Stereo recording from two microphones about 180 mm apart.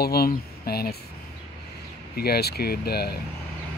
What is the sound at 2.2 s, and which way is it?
Speech, 60° left (ahead or behind).